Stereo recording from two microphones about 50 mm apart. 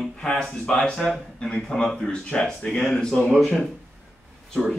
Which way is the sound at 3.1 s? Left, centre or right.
Centre.